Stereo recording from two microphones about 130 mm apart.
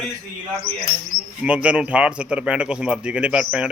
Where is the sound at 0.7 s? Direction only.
10° left (ahead or behind).